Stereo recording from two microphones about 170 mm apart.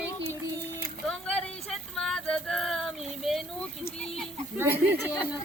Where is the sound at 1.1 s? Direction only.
5° left (ahead or behind).